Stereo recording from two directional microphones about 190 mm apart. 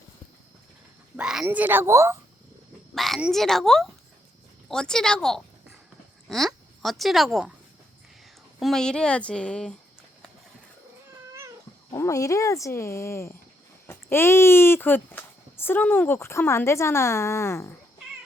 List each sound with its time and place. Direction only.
1.1 s a woman's voice: 5° right (ahead or behind)
2.9 s speech: centre (ahead or behind)
8.5 s speech: 5° left (ahead or behind)
11.9 s speech: 15° left (ahead or behind)